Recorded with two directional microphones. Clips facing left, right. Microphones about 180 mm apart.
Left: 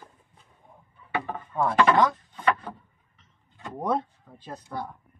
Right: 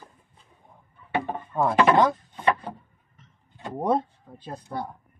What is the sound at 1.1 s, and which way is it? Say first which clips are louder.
Chop: right 3 dB; 25° right (ahead or behind).